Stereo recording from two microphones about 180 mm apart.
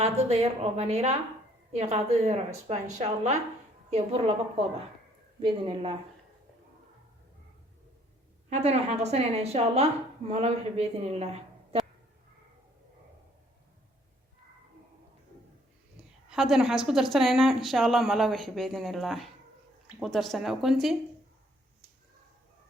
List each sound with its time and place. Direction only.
0.0 s a woman's voice: 35° right (ahead or behind)
5.4 s speech: 25° right (ahead or behind)
8.4 s a woman's voice: 35° right (ahead or behind)
16.3 s a woman's voice: centre (ahead or behind)